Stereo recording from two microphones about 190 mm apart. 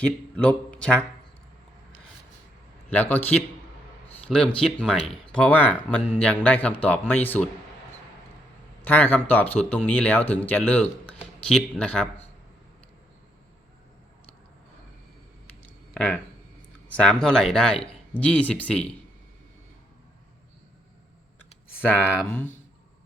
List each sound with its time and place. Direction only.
0.0 s speech: 5° left (ahead or behind)
2.9 s speech: 10° left (ahead or behind)
8.8 s speech: 10° left (ahead or behind)
16.0 s speech: 5° left (ahead or behind)
21.8 s speech: 10° left (ahead or behind)